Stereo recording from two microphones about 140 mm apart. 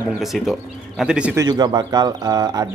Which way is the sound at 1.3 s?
30° right (ahead or behind).